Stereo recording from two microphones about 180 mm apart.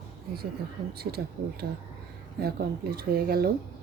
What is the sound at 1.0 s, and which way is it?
Speech, 60° right (ahead or behind).